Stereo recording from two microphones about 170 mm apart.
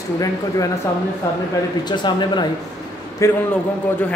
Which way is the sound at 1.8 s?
25° left (ahead or behind).